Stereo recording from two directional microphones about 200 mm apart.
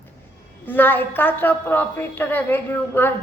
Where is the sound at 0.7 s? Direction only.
10° left (ahead or behind).